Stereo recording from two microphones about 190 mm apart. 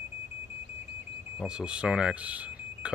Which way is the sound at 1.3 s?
5° right (ahead or behind).